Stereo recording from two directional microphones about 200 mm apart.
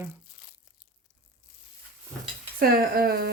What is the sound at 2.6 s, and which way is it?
Speech, 45° right (ahead or behind).